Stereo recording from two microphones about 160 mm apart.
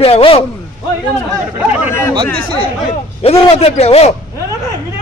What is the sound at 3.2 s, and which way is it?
Speech, 35° left (ahead or behind).